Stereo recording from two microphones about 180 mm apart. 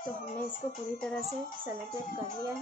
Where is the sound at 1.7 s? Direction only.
15° right (ahead or behind).